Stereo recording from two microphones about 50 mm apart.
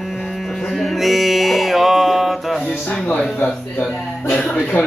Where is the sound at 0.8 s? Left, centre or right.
Centre.